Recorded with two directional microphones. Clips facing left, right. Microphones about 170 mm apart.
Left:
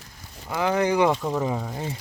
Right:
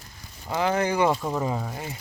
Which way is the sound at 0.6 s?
15° left (ahead or behind).